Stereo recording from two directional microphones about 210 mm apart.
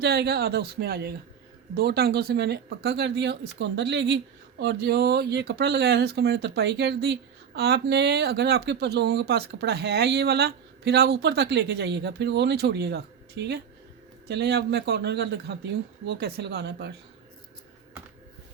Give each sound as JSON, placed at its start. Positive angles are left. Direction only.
{"t": 0.0, "sound": "speech", "side_deg": -50}